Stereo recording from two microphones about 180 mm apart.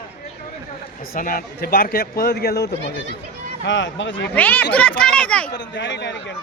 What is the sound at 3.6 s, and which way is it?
Speech, 90° left.